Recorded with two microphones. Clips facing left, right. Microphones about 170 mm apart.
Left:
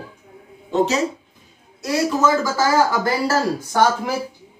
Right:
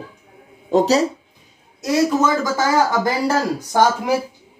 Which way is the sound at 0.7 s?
35° right (ahead or behind).